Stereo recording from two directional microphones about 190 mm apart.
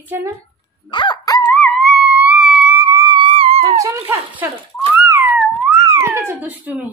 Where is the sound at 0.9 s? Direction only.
25° left (ahead or behind); by 2.6 s centre (ahead or behind).